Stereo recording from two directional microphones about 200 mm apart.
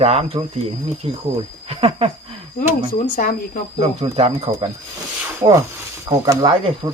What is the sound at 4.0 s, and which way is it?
Speech, 30° right (ahead or behind).